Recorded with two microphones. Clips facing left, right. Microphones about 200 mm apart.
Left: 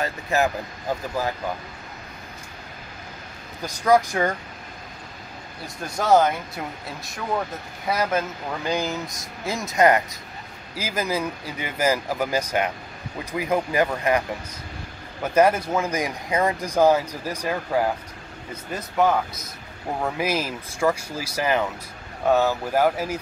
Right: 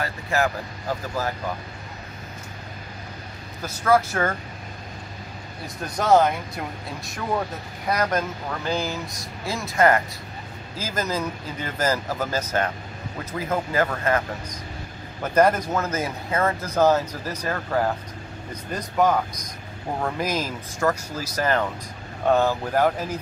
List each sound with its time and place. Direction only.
0.0 s speech: 20° left (ahead or behind)
3.6 s speech: 15° left (ahead or behind)
5.9 s speech: centre (ahead or behind)
7.9 s speech: 5° left (ahead or behind)